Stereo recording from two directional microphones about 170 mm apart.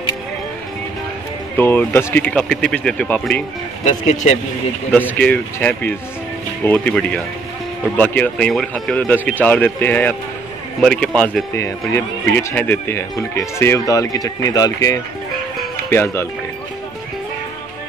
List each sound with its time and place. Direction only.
1.6 s speech: 10° left (ahead or behind)
3.8 s speech: 45° left (ahead or behind)
4.9 s speech: 10° left (ahead or behind)